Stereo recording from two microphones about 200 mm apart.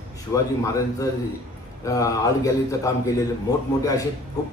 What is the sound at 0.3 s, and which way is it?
A man's voice, 15° left (ahead or behind).